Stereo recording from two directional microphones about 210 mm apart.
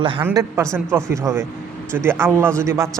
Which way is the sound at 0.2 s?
10° right (ahead or behind).